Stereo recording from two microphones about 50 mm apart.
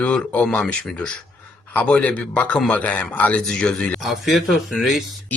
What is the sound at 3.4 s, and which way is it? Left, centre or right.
Speech, centre.